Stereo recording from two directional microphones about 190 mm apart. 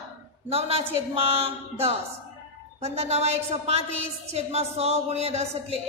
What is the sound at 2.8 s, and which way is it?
A woman's voice, 35° right (ahead or behind).